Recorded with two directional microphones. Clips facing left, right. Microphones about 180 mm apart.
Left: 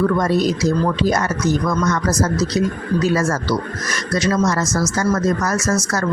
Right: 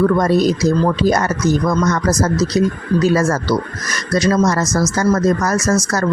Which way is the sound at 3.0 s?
35° right (ahead or behind).